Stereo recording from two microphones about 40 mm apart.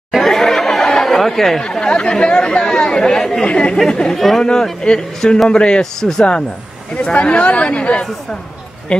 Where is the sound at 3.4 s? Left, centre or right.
Left.